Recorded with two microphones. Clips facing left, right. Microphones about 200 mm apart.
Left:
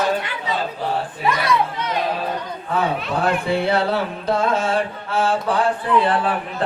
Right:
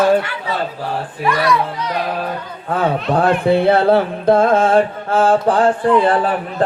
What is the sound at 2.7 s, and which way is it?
Speech, 55° right (ahead or behind).